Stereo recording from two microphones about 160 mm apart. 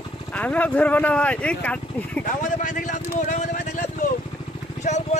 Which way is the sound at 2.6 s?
55° left (ahead or behind).